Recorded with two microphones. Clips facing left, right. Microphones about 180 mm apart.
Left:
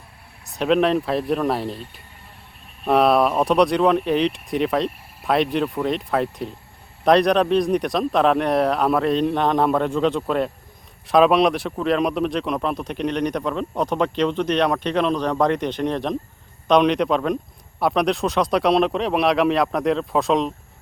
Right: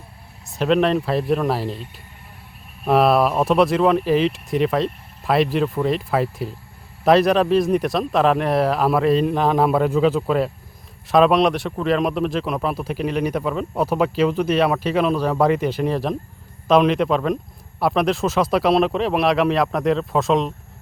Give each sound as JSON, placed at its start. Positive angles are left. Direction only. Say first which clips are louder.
{"t": 0.4, "sound": "speech", "louder": "even", "side_deg": 0}
{"t": 2.8, "sound": "speech", "louder": "right 1 dB", "side_deg": 0}